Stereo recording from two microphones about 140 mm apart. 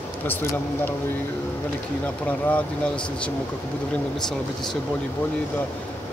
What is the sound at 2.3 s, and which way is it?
Speech, 10° left (ahead or behind).